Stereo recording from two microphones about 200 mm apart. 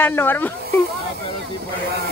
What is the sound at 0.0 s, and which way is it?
Speech, 10° left (ahead or behind).